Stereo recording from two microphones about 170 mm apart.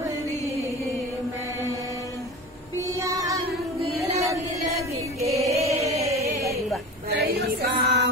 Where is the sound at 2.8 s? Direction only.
20° right (ahead or behind).